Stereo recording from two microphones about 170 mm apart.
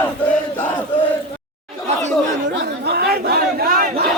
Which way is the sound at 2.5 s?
70° right (ahead or behind).